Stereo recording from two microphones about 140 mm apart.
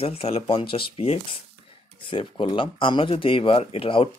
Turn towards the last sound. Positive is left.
turn(degrees=40)  # may be behind; listen again after turning